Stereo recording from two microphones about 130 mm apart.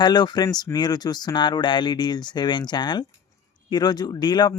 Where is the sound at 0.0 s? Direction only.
35° left (ahead or behind).